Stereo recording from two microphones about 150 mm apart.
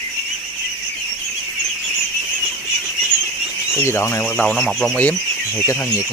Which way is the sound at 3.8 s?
15° left (ahead or behind).